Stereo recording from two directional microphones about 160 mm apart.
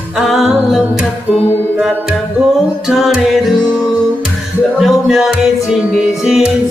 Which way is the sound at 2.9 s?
5° right (ahead or behind).